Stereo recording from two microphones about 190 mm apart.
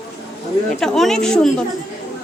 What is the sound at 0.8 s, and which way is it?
Speech, centre (ahead or behind).